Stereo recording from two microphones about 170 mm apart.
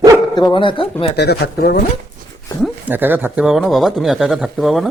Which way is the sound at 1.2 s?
70° left (ahead or behind).